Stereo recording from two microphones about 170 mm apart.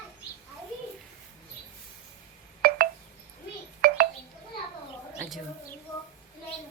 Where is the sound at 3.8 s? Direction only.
60° right (ahead or behind).